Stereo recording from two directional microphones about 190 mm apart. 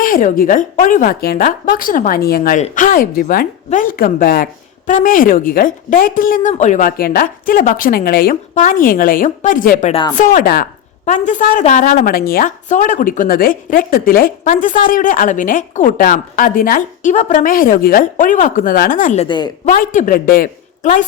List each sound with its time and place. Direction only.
0.0 s a woman's voice: 45° left (ahead or behind)
9.9 s speech: 25° left (ahead or behind)
10.2 s a woman's voice: 45° left (ahead or behind); by 19.5 s 30° left (ahead or behind)
19.6 s a woman's voice: 45° left (ahead or behind)